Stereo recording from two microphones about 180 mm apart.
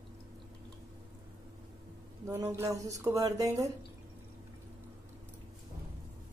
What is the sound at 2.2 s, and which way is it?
Speech, 15° right (ahead or behind).